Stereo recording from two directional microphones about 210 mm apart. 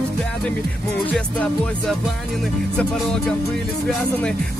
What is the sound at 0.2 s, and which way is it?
Speech, 5° left (ahead or behind).